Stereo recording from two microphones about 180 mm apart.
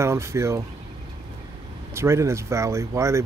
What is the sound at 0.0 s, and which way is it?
Speech, 15° right (ahead or behind).